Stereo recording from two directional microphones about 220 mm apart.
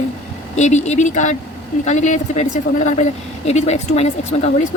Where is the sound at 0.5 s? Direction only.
30° left (ahead or behind).